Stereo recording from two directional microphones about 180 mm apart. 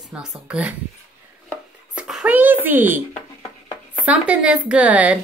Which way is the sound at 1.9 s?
5° right (ahead or behind).